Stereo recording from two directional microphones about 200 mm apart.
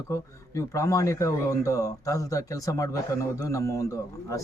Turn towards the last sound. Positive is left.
turn(degrees=15)  # may be behind; listen again after turning